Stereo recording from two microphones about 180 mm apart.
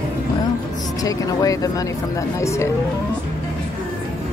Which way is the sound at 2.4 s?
15° left (ahead or behind).